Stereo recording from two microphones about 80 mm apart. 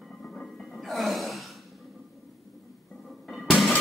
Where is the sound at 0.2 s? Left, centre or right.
Centre.